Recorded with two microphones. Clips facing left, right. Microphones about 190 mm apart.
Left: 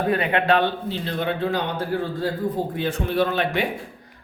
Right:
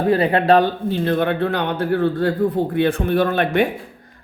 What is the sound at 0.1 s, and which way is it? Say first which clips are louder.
A man's voice: right 7 dB; 35° right (ahead or behind).